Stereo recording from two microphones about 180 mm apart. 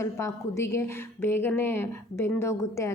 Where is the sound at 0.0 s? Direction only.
15° left (ahead or behind).